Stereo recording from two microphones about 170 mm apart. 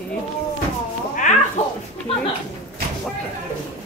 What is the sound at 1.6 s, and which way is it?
Dog, 40° left (ahead or behind).